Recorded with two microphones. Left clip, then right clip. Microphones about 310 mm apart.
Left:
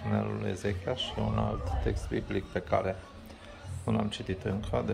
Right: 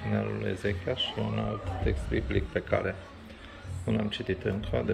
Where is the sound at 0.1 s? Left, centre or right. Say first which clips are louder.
Right 1 dB; centre.